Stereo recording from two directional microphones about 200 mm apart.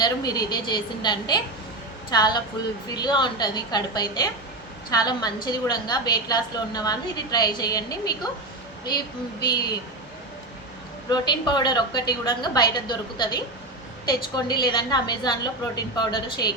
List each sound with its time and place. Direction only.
0.0 s a woman's voice: 20° left (ahead or behind)
11.1 s a woman's voice: 20° left (ahead or behind)